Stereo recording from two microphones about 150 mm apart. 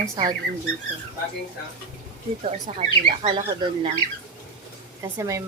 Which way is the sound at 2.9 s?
35° right (ahead or behind).